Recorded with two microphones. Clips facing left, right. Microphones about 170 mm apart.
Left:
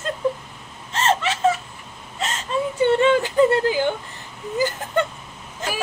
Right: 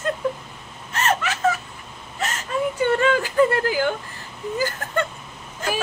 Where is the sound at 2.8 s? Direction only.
25° left (ahead or behind).